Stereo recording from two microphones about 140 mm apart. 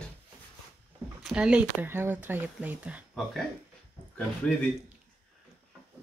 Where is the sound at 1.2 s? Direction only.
5° right (ahead or behind).